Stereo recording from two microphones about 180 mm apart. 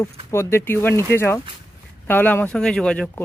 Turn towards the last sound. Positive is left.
turn(degrees=5)  # may be behind; listen again after turning